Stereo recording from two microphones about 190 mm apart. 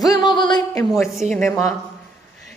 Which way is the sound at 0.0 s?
20° left (ahead or behind).